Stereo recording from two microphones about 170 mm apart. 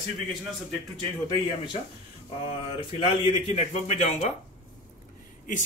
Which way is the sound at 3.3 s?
35° left (ahead or behind).